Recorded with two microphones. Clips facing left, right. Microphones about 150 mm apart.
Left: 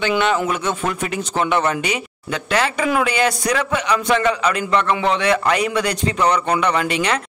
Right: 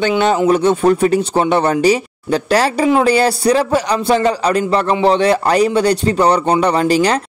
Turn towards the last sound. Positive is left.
turn(degrees=-35)  # may be behind; listen again after turning